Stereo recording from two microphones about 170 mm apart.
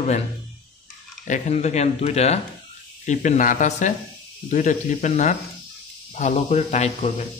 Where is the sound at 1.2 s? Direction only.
45° left (ahead or behind).